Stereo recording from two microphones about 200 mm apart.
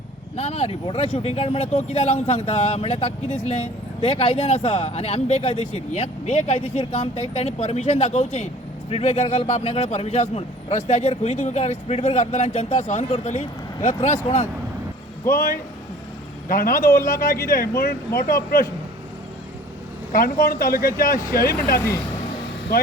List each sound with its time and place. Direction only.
0.3 s speech: 35° left (ahead or behind)
16.5 s speech: 45° left (ahead or behind)
16.9 s speech: 15° left (ahead or behind)
17.2 s speech: 45° left (ahead or behind)
20.1 s speech: 45° left (ahead or behind)